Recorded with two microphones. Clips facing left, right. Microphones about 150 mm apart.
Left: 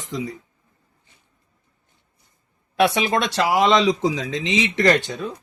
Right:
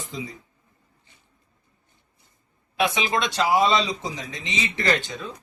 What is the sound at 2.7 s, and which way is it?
Speech, 70° left (ahead or behind).